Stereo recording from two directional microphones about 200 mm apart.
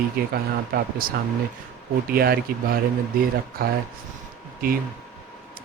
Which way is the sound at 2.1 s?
50° right (ahead or behind).